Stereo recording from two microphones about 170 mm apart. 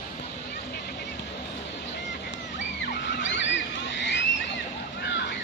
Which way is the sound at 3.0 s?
90° left.